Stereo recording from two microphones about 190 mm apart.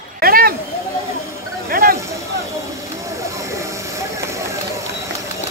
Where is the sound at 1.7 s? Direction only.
50° right (ahead or behind).